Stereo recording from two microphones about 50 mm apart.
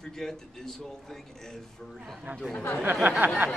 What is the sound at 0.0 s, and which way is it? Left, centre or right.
Speech, centre.